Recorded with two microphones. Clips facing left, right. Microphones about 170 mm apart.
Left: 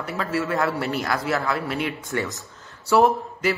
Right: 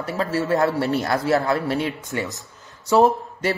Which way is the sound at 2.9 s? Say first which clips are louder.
Right 1 dB; 20° right (ahead or behind).